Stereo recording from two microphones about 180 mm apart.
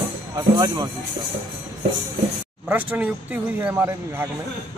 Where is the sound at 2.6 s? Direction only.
10° right (ahead or behind).